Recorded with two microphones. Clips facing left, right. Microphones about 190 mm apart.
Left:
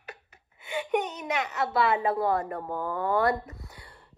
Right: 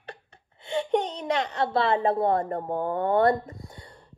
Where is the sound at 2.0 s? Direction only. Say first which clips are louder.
Right 3 dB; 25° right (ahead or behind).